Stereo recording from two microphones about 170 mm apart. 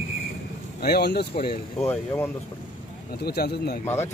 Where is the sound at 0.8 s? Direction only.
70° left (ahead or behind).